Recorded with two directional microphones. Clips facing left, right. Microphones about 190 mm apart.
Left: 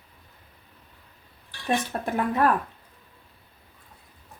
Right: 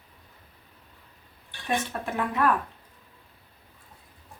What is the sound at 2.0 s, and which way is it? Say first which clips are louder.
Speech: left 4 dB; 35° left (ahead or behind).